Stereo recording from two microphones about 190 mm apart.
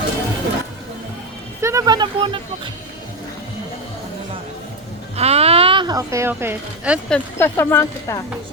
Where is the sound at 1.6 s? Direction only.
15° right (ahead or behind).